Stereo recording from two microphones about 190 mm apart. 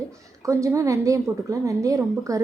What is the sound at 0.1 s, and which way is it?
A woman's voice, 15° right (ahead or behind).